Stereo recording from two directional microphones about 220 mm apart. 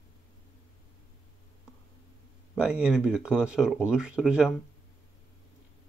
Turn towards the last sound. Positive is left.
turn(degrees=-5)  # may be behind; listen again after turning